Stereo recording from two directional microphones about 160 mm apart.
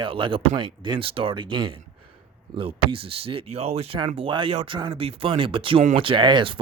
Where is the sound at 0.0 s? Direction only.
30° right (ahead or behind).